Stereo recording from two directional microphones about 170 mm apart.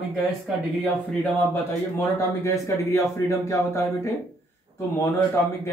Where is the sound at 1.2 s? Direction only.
10° left (ahead or behind).